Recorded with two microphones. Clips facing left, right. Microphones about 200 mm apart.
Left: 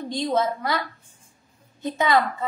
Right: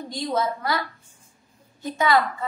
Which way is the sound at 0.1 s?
20° left (ahead or behind).